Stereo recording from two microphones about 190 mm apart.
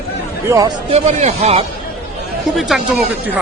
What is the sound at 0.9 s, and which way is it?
Speech, 35° right (ahead or behind).